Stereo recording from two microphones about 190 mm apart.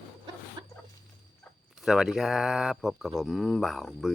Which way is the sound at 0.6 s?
20° right (ahead or behind).